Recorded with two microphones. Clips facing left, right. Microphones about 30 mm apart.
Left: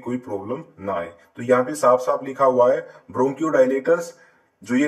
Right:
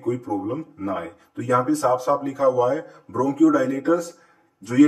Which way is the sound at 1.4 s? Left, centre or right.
Centre.